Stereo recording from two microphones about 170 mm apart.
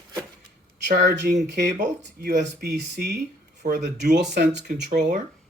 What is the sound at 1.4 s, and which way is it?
Speech, 90° right.